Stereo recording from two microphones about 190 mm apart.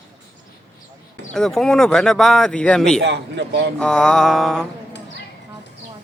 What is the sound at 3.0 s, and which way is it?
Speech, 65° right (ahead or behind).